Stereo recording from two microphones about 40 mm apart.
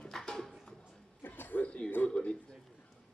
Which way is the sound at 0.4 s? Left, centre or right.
Centre.